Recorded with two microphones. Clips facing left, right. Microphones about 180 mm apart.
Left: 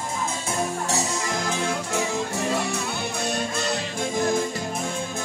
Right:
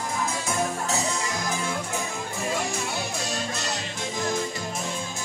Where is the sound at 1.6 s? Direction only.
80° left.